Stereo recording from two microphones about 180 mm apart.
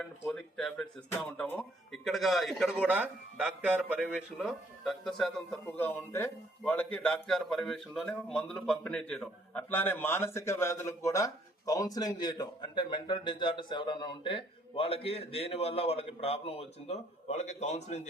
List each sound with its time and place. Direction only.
0.3 s speech: 5° left (ahead or behind); by 18.0 s 40° left (ahead or behind)